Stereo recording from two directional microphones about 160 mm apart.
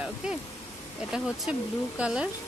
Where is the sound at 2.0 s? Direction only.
5° right (ahead or behind).